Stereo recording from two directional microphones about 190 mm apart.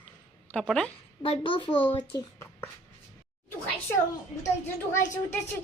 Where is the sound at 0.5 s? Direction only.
5° left (ahead or behind).